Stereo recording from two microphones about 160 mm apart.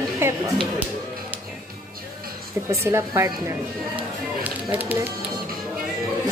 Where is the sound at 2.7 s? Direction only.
15° right (ahead or behind).